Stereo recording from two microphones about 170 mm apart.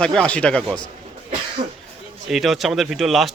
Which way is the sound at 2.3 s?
Centre (ahead or behind).